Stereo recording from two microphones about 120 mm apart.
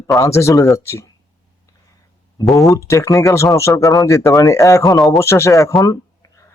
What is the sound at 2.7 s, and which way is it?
Speech, 25° left (ahead or behind).